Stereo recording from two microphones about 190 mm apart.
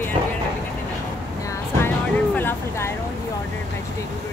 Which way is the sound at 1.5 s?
10° left (ahead or behind).